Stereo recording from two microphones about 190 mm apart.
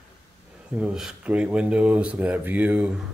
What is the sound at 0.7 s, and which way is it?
Speech, 5° right (ahead or behind).